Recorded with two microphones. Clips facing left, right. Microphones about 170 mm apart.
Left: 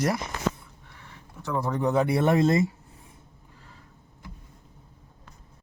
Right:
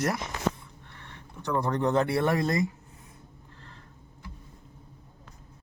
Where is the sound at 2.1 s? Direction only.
20° left (ahead or behind).